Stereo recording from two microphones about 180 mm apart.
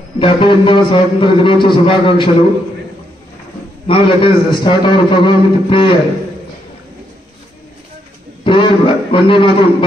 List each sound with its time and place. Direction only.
0.2 s a man's voice: 25° left (ahead or behind)
3.8 s a man's voice: 30° left (ahead or behind)
8.5 s a man's voice: 30° left (ahead or behind)